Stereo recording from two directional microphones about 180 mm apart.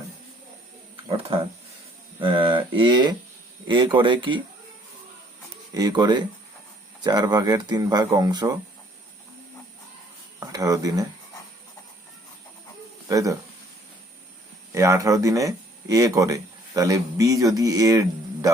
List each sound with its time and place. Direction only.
2.2 s speech: 30° right (ahead or behind)
5.7 s speech: 20° right (ahead or behind)
10.4 s speech: 20° right (ahead or behind)
13.1 s speech: 20° right (ahead or behind)
14.7 s speech: 15° right (ahead or behind)